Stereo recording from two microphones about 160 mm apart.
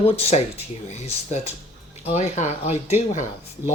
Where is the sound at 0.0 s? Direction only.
35° left (ahead or behind).